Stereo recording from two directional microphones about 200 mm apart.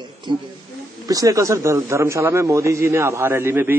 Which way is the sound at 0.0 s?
25° right (ahead or behind).